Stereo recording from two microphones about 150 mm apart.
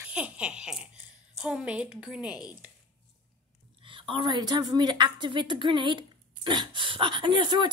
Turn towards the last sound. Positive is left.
turn(degrees=-30)  # may be behind; listen again after turning